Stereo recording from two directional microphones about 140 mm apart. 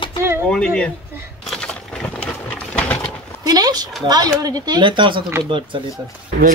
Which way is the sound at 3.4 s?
30° right (ahead or behind).